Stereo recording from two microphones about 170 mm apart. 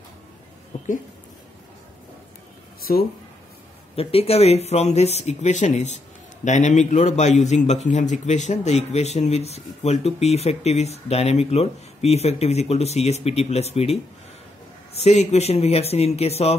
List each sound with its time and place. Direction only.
2.8 s speech: 60° left (ahead or behind)
3.9 s a man's voice: 35° left (ahead or behind)
15.0 s a man's voice: 40° left (ahead or behind)